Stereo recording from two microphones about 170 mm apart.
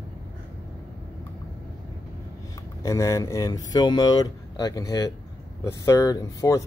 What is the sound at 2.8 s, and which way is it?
Speech, 20° left (ahead or behind).